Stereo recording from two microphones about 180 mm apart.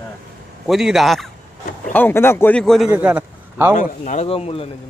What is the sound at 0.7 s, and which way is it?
A man's voice, centre (ahead or behind).